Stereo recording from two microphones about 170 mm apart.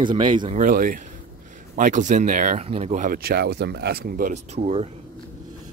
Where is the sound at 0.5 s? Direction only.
50° right (ahead or behind).